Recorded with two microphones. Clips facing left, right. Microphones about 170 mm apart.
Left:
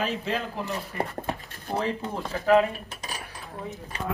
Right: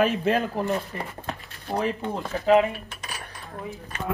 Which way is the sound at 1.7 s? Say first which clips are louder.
Right 2 dB; 15° right (ahead or behind).